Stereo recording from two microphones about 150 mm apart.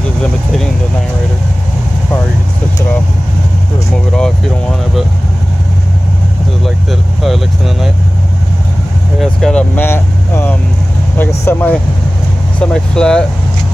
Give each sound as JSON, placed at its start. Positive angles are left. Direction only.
{"t": 6.6, "sound": "speech", "side_deg": 0}
{"t": 9.2, "sound": "speech", "side_deg": 5}
{"t": 12.5, "sound": "speech", "side_deg": 5}